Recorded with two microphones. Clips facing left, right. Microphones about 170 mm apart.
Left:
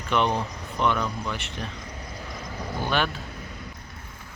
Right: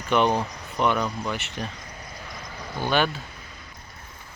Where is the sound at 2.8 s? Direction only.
Centre (ahead or behind).